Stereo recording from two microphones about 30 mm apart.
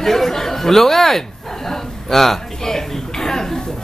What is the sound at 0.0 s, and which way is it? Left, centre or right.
Chatter, centre.